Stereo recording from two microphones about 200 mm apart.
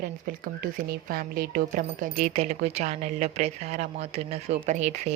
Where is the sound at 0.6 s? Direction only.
50° right (ahead or behind).